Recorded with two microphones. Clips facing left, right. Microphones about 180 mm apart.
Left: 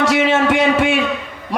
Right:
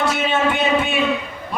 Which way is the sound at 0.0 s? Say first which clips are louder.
Left 4 dB; 85° left.